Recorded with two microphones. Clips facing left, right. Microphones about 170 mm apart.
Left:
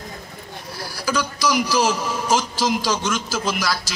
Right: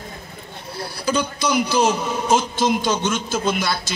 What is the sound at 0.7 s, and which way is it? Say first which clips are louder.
A man's voice: right 2 dB; 25° right (ahead or behind).